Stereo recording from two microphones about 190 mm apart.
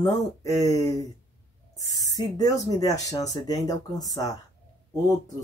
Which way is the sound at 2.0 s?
20° left (ahead or behind).